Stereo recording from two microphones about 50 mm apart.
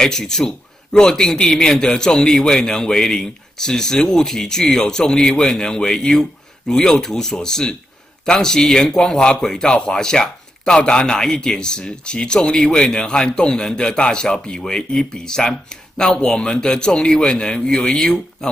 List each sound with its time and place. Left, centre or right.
0.0 s speech: centre